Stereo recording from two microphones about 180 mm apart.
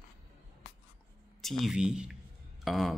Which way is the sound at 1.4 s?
Centre (ahead or behind).